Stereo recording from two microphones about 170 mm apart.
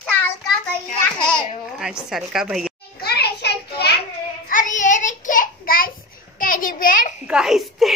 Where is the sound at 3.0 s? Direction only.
70° left (ahead or behind).